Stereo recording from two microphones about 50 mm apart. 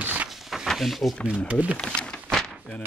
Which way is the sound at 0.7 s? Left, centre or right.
Centre.